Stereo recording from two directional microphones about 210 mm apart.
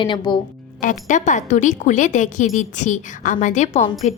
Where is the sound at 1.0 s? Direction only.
35° left (ahead or behind).